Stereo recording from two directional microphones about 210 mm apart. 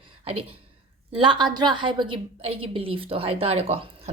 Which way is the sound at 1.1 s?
25° right (ahead or behind).